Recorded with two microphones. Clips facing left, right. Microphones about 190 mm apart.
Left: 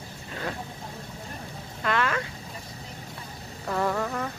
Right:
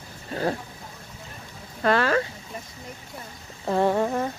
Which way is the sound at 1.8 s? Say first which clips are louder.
Right 6 dB; 35° right (ahead or behind).